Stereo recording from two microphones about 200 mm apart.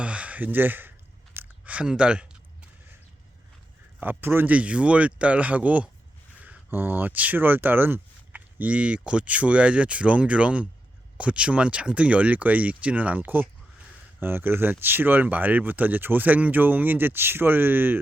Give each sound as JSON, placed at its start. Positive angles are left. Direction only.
{"t": 0.0, "sound": "chewing", "side_deg": -5}
{"t": 4.0, "sound": "speech", "side_deg": -10}